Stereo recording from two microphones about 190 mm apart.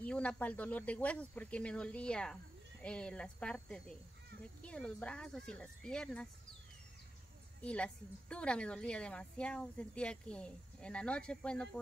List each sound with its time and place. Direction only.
0.0 s a woman's voice: 5° left (ahead or behind)
7.6 s a woman's voice: 5° left (ahead or behind)